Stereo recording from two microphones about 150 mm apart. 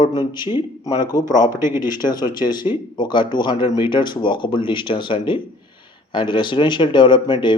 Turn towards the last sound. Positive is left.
turn(degrees=30)  # may be behind; listen again after turning